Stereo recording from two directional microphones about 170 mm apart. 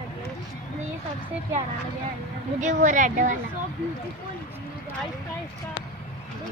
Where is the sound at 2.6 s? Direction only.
45° right (ahead or behind).